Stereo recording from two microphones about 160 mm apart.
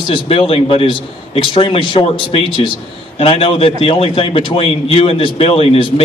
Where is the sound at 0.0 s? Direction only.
35° left (ahead or behind).